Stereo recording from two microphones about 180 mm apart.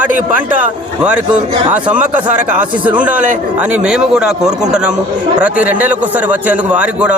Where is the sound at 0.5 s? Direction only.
10° right (ahead or behind).